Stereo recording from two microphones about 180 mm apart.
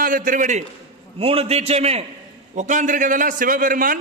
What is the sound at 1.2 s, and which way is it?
A man's voice, 30° right (ahead or behind).